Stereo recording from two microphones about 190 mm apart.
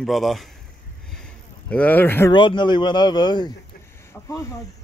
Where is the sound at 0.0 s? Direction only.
Centre (ahead or behind).